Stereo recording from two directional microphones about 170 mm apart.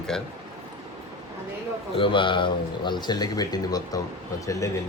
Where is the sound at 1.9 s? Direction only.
30° left (ahead or behind).